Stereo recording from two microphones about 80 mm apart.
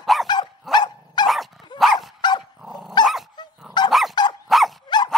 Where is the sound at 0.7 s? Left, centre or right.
Left.